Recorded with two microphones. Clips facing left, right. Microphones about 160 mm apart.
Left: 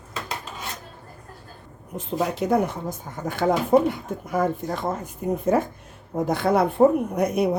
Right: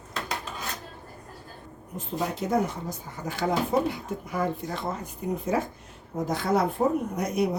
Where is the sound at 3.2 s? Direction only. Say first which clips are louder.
Left 5 dB; 55° left (ahead or behind).